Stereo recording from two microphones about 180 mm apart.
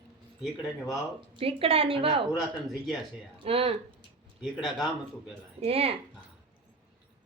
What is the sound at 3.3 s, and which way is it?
Speech, 30° right (ahead or behind).